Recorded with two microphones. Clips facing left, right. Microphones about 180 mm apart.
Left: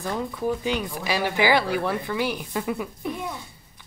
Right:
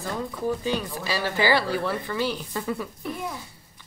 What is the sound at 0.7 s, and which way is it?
Speech, 15° left (ahead or behind).